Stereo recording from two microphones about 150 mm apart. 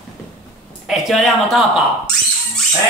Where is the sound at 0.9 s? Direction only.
Centre (ahead or behind).